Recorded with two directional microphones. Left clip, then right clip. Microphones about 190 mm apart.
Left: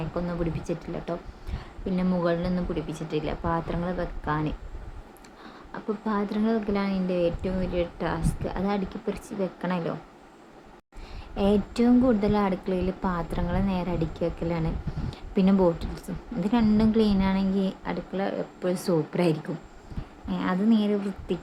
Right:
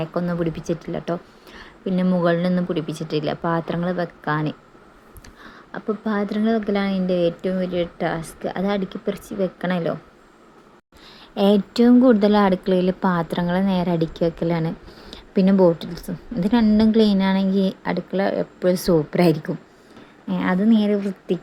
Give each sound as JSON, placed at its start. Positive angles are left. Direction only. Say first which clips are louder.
{"t": 0.1, "sound": "a woman's voice", "louder": "right 6 dB", "side_deg": -25}
{"t": 11.3, "sound": "a woman's voice", "louder": "right 7 dB", "side_deg": -25}